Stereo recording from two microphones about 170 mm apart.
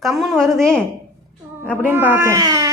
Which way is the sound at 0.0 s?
Centre (ahead or behind).